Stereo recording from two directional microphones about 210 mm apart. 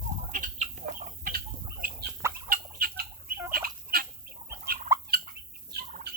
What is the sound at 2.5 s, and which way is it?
Fowl, 45° right (ahead or behind).